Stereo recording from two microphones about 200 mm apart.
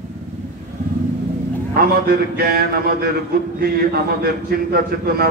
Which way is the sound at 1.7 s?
50° right (ahead or behind).